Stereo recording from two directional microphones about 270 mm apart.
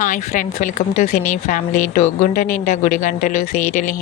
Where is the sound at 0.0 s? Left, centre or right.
Left.